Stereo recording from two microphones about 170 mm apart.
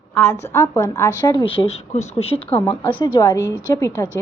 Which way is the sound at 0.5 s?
15° left (ahead or behind).